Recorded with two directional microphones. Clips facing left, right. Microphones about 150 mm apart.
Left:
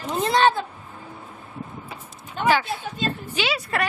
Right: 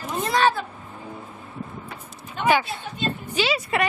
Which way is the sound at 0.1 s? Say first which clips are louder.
Left 2 dB; 25° left (ahead or behind).